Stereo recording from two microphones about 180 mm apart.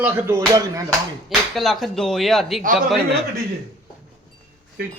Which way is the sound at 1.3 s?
Centre (ahead or behind).